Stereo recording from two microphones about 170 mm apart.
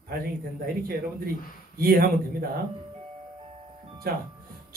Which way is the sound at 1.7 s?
60° right (ahead or behind).